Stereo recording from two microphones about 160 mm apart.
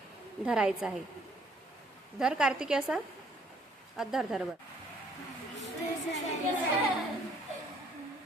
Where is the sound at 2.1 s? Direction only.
5° right (ahead or behind).